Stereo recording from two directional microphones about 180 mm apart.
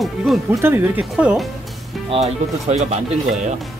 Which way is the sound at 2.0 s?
35° right (ahead or behind).